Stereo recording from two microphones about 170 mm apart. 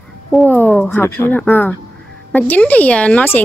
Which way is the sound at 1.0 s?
15° left (ahead or behind).